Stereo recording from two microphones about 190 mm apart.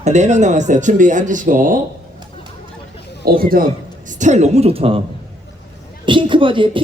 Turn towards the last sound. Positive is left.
turn(degrees=-25)  # may be behind; listen again after turning